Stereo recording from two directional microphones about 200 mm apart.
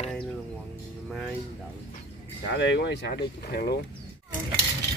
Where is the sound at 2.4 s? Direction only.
60° left (ahead or behind).